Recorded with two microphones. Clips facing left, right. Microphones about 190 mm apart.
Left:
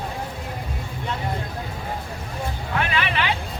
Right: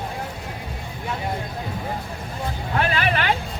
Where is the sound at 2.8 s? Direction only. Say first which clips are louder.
Right 2 dB; 40° right (ahead or behind).